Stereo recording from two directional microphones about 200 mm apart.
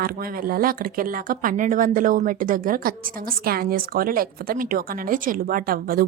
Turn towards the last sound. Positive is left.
turn(degrees=-45)  # may be behind; listen again after turning